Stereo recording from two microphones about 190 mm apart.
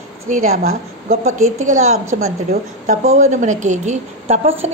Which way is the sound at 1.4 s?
40° right (ahead or behind).